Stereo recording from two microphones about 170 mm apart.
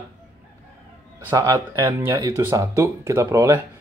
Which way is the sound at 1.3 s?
20° right (ahead or behind).